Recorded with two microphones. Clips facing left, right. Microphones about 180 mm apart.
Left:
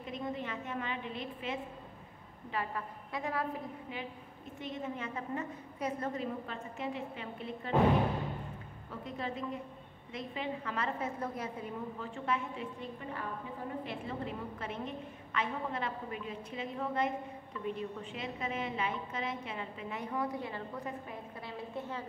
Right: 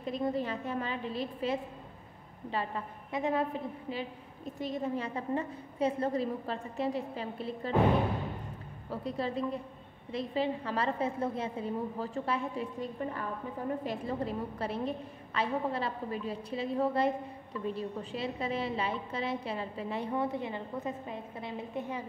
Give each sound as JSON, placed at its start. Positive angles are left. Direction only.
{"t": 0.0, "sound": "a woman's voice", "side_deg": -35}
{"t": 4.6, "sound": "a woman's voice", "side_deg": -35}
{"t": 8.9, "sound": "a woman's voice", "side_deg": -35}
{"t": 13.8, "sound": "a woman's voice", "side_deg": -40}